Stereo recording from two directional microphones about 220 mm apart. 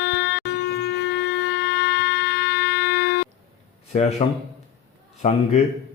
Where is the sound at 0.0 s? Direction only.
50° left (ahead or behind).